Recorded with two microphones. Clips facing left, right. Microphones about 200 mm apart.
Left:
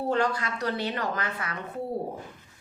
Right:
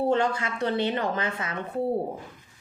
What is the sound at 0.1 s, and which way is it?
A woman's voice, 25° right (ahead or behind).